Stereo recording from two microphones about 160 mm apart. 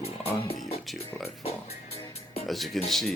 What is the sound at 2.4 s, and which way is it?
Speech, centre (ahead or behind).